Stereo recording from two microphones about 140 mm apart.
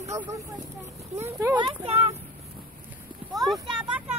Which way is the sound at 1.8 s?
50° right (ahead or behind).